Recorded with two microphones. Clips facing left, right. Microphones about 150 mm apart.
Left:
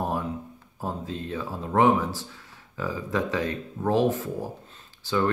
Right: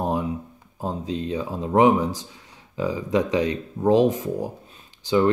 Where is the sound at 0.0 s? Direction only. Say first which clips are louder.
Right 4 dB; 15° right (ahead or behind).